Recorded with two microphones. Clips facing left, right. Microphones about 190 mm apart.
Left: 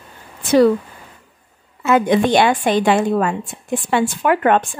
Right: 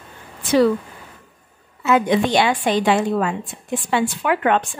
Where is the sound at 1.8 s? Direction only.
50° left (ahead or behind).